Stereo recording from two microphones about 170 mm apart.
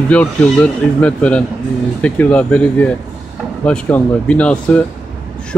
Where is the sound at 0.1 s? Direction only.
10° left (ahead or behind).